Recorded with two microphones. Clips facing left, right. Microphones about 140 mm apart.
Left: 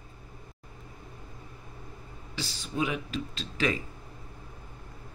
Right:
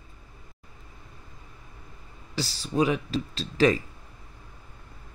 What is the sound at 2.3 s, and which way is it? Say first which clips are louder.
Speech: right 7 dB; 35° right (ahead or behind).